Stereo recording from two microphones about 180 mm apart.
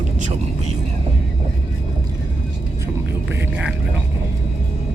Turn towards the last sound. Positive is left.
turn(degrees=-5)  # may be behind; listen again after turning